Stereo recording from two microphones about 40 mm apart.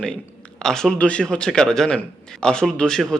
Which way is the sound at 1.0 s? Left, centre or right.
Left.